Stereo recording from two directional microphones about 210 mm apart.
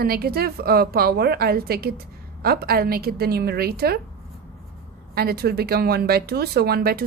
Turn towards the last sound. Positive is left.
turn(degrees=-45)  # may be behind; listen again after turning